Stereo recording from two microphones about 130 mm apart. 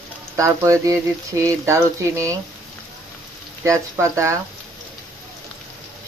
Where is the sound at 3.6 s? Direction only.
25° right (ahead or behind).